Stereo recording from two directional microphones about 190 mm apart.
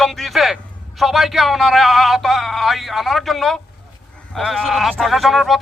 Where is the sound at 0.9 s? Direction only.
Centre (ahead or behind).